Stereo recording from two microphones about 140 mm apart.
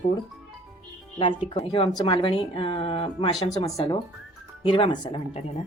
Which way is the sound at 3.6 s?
50° left (ahead or behind).